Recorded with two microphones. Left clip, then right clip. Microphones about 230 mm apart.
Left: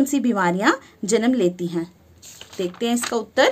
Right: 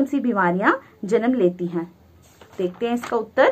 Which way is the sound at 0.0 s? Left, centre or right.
Left.